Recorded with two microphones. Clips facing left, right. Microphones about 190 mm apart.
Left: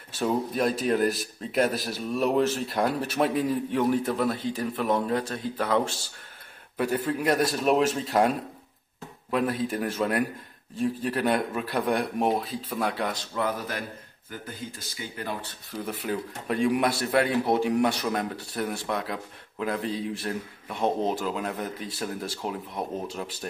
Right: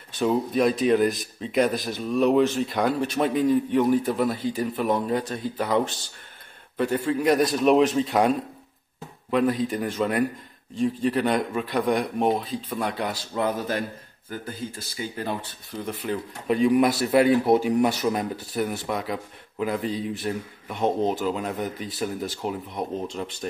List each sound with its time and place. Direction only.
0.1 s speech: centre (ahead or behind)
9.3 s speech: centre (ahead or behind)
13.3 s speech: 25° right (ahead or behind)
15.7 s speech: 5° left (ahead or behind)